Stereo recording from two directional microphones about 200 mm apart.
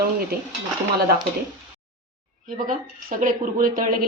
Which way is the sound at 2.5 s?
40° right (ahead or behind).